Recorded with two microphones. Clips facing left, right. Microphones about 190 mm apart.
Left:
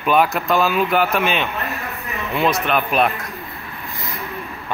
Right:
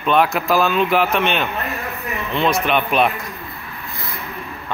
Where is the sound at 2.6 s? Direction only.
Centre (ahead or behind).